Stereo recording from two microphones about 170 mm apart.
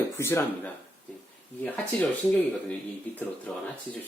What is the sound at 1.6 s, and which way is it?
Speech, 10° left (ahead or behind).